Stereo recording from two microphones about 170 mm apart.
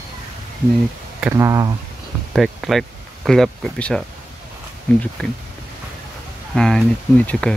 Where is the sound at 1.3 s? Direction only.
20° right (ahead or behind).